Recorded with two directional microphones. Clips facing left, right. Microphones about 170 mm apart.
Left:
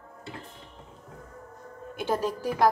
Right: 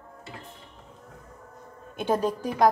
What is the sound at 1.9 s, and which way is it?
Speech, 20° right (ahead or behind).